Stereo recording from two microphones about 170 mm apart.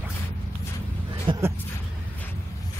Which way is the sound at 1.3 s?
30° right (ahead or behind).